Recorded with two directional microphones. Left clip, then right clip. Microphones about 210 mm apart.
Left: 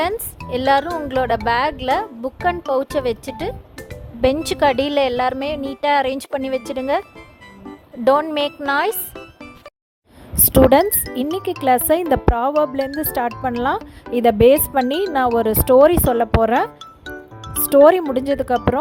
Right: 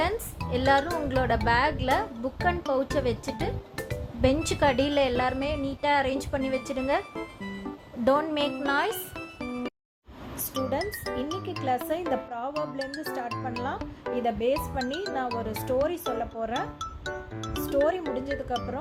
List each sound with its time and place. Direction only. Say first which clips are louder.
0.5 s speech: left 7 dB; 45° left (ahead or behind)
8.0 s speech: left 8 dB; 50° left (ahead or behind)
9.1 s music: right 1 dB; centre (ahead or behind)
10.7 s speech: left 15 dB; 50° left (ahead or behind)
17.7 s speech: left 15 dB; 50° left (ahead or behind)